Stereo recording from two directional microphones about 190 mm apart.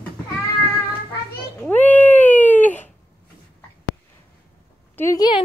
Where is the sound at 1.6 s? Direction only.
10° left (ahead or behind).